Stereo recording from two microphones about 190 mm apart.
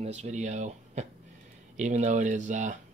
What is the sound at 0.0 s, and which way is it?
Speech, 35° right (ahead or behind).